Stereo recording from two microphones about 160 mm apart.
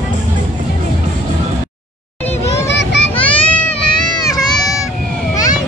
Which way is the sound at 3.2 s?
10° left (ahead or behind).